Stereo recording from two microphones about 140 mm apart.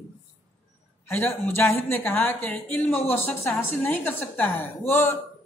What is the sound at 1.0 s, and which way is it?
A man's voice, 15° left (ahead or behind).